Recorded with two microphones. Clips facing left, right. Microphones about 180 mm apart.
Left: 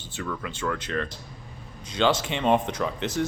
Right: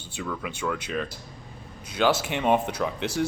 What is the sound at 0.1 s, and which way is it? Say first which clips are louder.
Speech: even; 10° right (ahead or behind).